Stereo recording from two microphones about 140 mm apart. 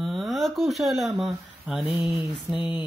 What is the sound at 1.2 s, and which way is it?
Speech, 5° right (ahead or behind).